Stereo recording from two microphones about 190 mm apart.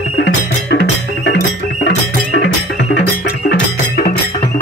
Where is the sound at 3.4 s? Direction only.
55° left (ahead or behind).